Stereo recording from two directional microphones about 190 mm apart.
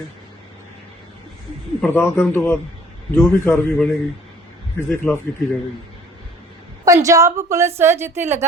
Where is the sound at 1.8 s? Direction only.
10° left (ahead or behind).